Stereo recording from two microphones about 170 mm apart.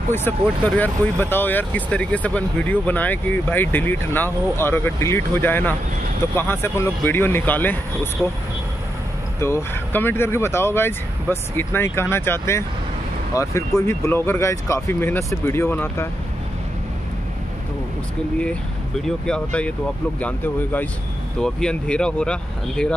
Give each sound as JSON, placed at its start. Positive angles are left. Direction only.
{"t": 0.7, "sound": "speech", "side_deg": 10}
{"t": 9.4, "sound": "speech", "side_deg": 15}
{"t": 19.0, "sound": "speech", "side_deg": 5}